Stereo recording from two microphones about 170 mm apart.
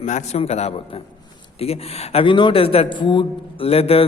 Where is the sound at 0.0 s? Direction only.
45° left (ahead or behind).